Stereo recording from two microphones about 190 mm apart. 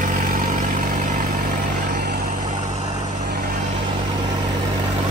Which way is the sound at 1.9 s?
55° right (ahead or behind).